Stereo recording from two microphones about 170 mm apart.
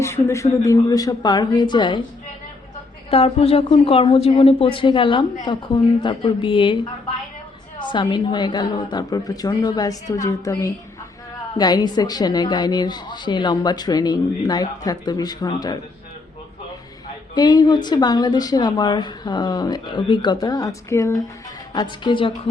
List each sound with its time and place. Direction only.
0.0 s a woman's voice: 15° left (ahead or behind)
3.1 s a woman's voice: 35° left (ahead or behind)
7.8 s a woman's voice: 25° left (ahead or behind)
17.3 s a woman's voice: 25° left (ahead or behind)